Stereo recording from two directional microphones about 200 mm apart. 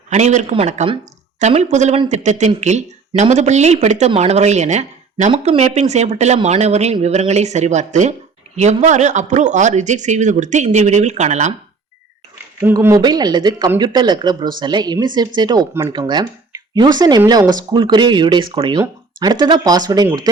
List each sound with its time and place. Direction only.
0.1 s speech: 35° right (ahead or behind)
12.6 s speech: 15° right (ahead or behind)